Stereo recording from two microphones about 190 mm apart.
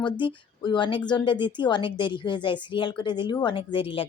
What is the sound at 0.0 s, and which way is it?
Speech, 25° left (ahead or behind).